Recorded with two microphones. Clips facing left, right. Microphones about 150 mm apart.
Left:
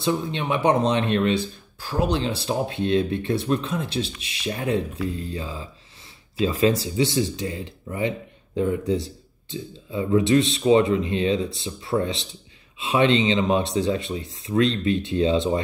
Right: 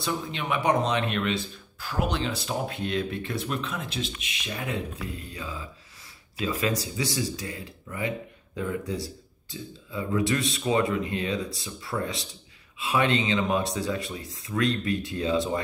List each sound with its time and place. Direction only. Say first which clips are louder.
0.0 s speech: left 6 dB; 25° left (ahead or behind)